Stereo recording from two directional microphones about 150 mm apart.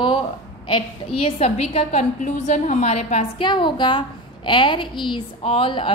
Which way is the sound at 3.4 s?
30° left (ahead or behind).